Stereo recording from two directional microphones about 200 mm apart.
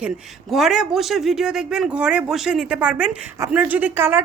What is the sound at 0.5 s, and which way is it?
A woman's voice, centre (ahead or behind).